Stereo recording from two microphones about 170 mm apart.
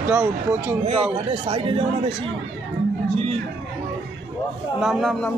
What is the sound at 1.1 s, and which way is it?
Speech, 30° right (ahead or behind).